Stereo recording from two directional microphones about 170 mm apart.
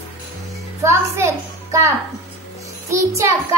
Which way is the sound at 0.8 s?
15° right (ahead or behind).